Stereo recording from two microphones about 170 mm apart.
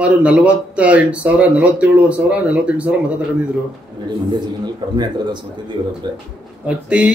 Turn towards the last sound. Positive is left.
turn(degrees=-5)  # may be behind; listen again after turning